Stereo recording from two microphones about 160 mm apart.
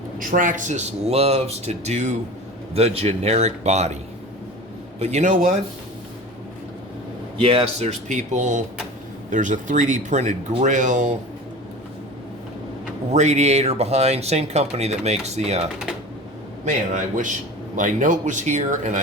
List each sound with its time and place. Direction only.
0.2 s speech: 55° right (ahead or behind)
4.9 s speech: 45° right (ahead or behind)
7.3 s speech: 40° right (ahead or behind)
13.1 s speech: 45° right (ahead or behind)
16.6 s speech: 50° right (ahead or behind)